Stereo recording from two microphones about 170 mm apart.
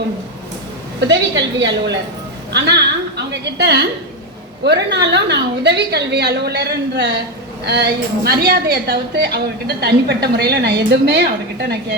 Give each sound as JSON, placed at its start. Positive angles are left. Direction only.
{"t": 1.0, "sound": "a woman's voice", "side_deg": -90}
{"t": 4.6, "sound": "a woman's voice", "side_deg": -90}